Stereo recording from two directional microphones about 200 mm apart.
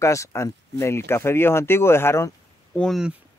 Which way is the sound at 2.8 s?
Centre (ahead or behind).